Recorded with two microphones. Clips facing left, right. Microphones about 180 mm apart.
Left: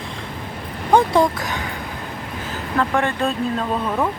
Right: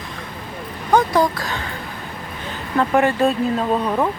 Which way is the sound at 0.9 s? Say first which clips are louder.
Left 1 dB; 25° left (ahead or behind).